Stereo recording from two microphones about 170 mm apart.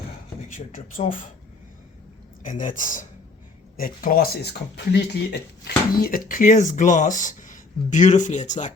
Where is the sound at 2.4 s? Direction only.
50° left (ahead or behind).